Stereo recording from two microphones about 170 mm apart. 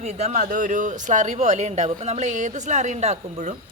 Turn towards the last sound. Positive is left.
turn(degrees=-40)  # may be behind; listen again after turning